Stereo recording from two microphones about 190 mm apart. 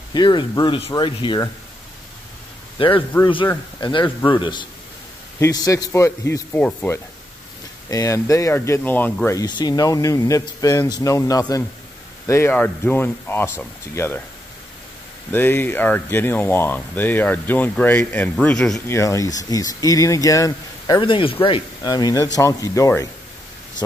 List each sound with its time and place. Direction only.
0.1 s speech: 25° left (ahead or behind)
3.1 s speech: 20° left (ahead or behind)
15.3 s speech: 10° left (ahead or behind)
18.9 s speech: 15° left (ahead or behind)